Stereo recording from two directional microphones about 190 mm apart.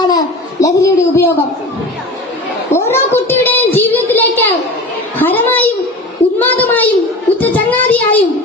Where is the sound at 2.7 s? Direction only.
15° left (ahead or behind).